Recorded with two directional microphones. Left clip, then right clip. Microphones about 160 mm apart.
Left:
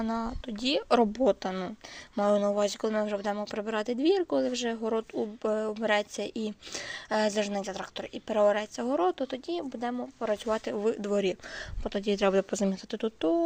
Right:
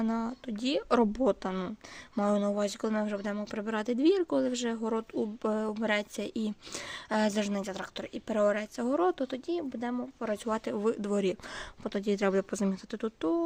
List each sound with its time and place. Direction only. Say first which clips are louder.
0.0 s speech: left 1 dB; 25° right (ahead or behind); by 13.4 s 10° right (ahead or behind)